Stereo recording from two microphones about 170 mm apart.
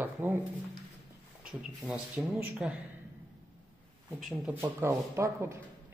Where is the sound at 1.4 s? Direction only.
5° right (ahead or behind).